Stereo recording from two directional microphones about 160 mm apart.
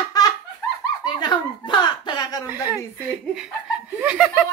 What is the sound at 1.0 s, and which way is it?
Speech, 25° left (ahead or behind).